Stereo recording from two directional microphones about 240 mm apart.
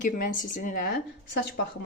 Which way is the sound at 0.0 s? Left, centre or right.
Left.